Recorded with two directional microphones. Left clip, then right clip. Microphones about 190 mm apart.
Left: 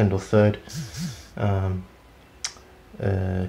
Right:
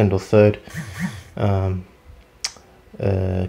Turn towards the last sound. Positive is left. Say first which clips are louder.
# right 5 dB
turn(degrees=-35)  # may be behind; listen again after turning